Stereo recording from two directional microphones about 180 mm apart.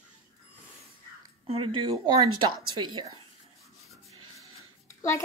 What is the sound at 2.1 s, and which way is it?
Speech, 25° right (ahead or behind).